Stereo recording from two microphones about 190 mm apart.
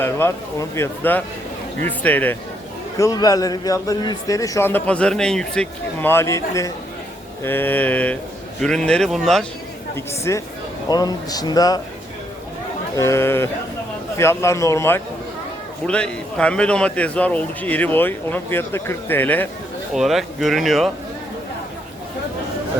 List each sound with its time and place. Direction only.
0.0 s a man's voice: 15° left (ahead or behind)
9.9 s a man's voice: 15° left (ahead or behind)
13.0 s a man's voice: 15° left (ahead or behind)
19.9 s speech: centre (ahead or behind)